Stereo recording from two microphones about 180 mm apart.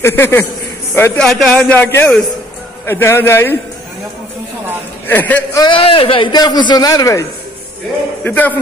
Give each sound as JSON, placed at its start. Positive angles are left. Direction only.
{"t": 0.0, "sound": "a man's voice", "side_deg": 15}
{"t": 5.0, "sound": "a man's voice", "side_deg": 10}
{"t": 5.7, "sound": "a man's voice", "side_deg": 30}